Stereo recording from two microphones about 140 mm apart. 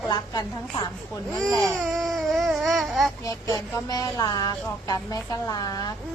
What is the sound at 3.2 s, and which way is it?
Speech, 25° left (ahead or behind).